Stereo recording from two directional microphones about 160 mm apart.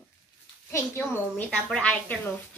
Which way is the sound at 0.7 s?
15° left (ahead or behind).